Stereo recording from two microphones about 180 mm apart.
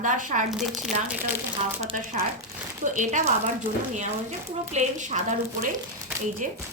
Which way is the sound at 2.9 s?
45° right (ahead or behind).